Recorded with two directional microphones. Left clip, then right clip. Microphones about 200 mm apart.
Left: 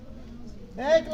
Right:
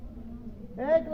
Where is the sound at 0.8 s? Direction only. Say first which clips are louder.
Left 3 dB; 30° left (ahead or behind).